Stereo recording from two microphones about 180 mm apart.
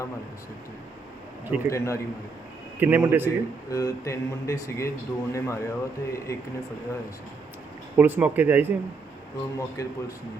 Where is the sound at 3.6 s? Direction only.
20° left (ahead or behind).